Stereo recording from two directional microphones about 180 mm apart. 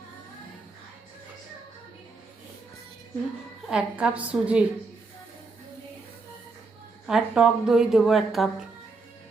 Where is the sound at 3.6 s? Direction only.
5° right (ahead or behind).